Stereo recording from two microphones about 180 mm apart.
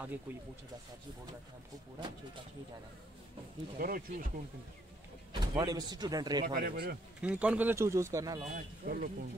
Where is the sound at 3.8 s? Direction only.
50° right (ahead or behind).